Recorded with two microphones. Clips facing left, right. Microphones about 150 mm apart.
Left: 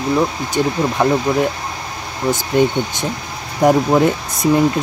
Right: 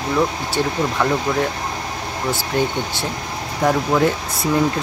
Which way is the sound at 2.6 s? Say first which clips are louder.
Left 6 dB; 15° left (ahead or behind).